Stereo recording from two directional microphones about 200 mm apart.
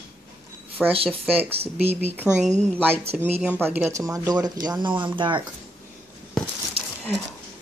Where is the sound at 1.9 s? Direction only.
10° right (ahead or behind).